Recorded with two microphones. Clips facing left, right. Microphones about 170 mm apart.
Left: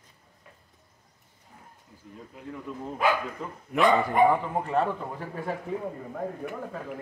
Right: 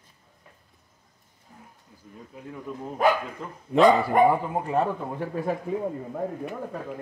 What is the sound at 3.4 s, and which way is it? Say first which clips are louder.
Speech: left 1 dB; 5° left (ahead or behind).